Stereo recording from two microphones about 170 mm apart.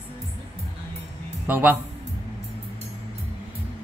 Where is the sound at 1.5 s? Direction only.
10° right (ahead or behind).